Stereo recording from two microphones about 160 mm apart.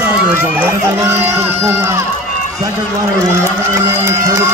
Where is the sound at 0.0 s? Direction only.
15° right (ahead or behind).